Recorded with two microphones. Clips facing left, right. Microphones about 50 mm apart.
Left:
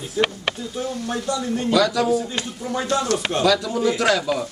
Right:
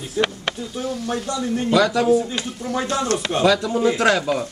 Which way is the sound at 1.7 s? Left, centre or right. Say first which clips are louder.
Right 1 dB; right.